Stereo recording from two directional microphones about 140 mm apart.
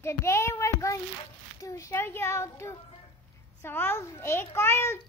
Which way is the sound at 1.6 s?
25° left (ahead or behind).